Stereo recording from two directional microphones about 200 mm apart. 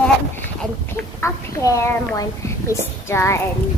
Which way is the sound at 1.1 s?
15° left (ahead or behind).